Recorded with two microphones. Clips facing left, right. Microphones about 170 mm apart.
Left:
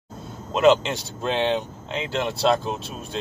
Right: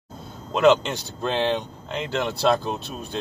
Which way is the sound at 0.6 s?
Centre (ahead or behind).